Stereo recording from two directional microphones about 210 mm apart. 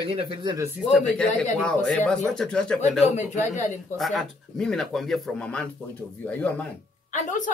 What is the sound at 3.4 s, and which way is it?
Speech, 35° left (ahead or behind).